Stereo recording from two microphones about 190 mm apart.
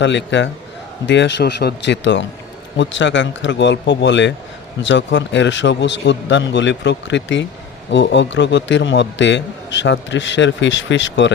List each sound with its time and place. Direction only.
0.0 s a man's voice: 70° left (ahead or behind)